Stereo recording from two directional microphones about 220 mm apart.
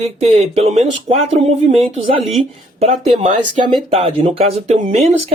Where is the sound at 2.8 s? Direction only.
30° right (ahead or behind).